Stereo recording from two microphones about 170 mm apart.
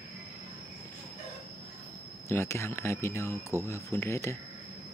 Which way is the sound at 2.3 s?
15° left (ahead or behind).